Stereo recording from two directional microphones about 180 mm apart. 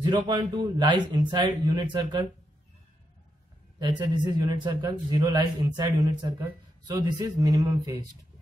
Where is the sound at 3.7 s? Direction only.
25° right (ahead or behind).